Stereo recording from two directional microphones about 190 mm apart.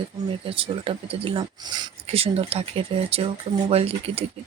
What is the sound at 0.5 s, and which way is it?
Speech, 30° right (ahead or behind).